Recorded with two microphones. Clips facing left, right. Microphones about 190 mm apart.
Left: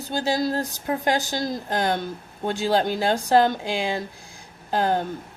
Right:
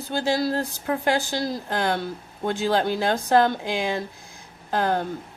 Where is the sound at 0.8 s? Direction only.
40° left (ahead or behind).